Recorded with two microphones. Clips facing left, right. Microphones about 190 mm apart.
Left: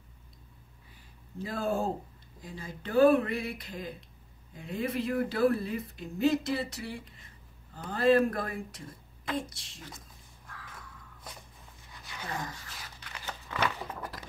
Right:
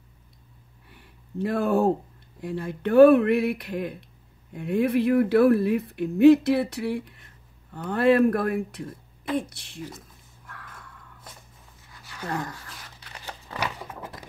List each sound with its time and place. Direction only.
0.8 s a sound: 65° right (ahead or behind)
2.4 s speech: 65° right (ahead or behind)
9.8 s speech: 10° right (ahead or behind)
10.5 s a sound: 60° right (ahead or behind)
12.3 s speech: 65° right (ahead or behind)
13.1 s crumpling: 35° right (ahead or behind)